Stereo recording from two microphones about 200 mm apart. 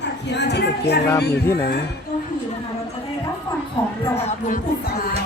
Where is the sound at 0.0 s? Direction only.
60° left (ahead or behind).